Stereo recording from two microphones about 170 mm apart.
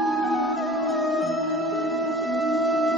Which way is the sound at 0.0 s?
Centre (ahead or behind).